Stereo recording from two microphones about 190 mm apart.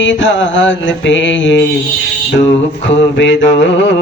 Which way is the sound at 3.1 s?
75° left (ahead or behind).